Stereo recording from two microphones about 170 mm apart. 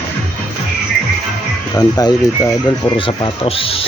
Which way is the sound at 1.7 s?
20° left (ahead or behind).